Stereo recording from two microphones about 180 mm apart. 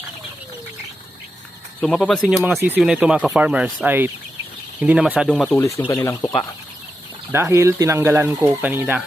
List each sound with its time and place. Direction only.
1.8 s speech: 5° left (ahead or behind)
7.3 s speech: 15° right (ahead or behind)